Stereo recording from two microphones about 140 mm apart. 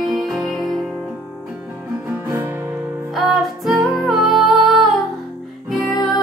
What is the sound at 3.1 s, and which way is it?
Music, centre (ahead or behind).